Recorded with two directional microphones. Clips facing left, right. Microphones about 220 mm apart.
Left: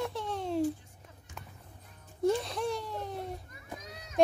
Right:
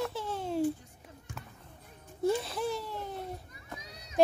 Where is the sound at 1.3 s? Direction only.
55° right (ahead or behind).